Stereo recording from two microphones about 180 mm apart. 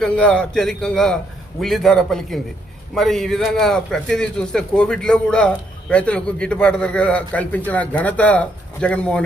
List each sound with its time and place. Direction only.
0.0 s a man's voice: 5° left (ahead or behind)